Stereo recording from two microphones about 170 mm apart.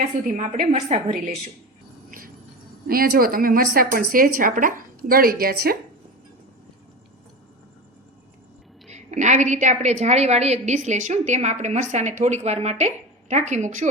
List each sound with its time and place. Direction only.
0.3 s a woman's voice: 55° right (ahead or behind)
0.7 s a woman's voice: 35° right (ahead or behind)
2.0 s a sound: 55° right (ahead or behind)
2.8 s a woman's voice: 60° right (ahead or behind)
8.9 s a woman's voice: 45° right (ahead or behind)